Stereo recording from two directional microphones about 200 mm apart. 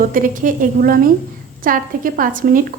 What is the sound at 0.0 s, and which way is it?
A woman's voice, 40° right (ahead or behind).